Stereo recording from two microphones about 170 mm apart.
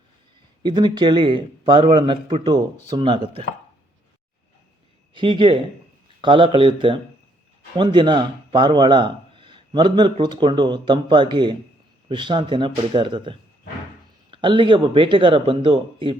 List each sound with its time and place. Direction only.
0.6 s speech: 25° right (ahead or behind)
5.1 s speech: 30° right (ahead or behind)